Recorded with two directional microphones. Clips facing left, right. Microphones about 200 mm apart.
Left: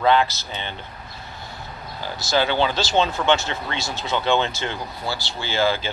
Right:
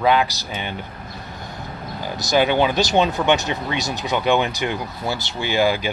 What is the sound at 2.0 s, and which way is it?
Speech, 20° right (ahead or behind).